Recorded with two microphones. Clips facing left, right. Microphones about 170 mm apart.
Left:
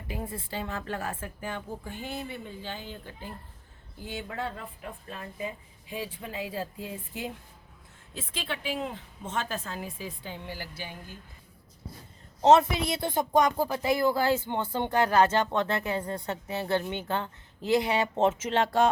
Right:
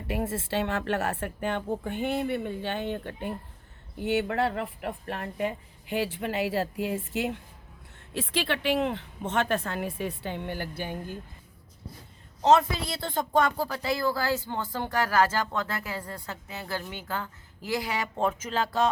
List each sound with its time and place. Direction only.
0.1 s a woman's voice: 75° right (ahead or behind); by 11.2 s 50° right (ahead or behind)
12.4 s speech: 25° left (ahead or behind)